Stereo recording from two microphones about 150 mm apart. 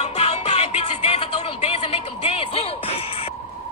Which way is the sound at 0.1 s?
45° left (ahead or behind).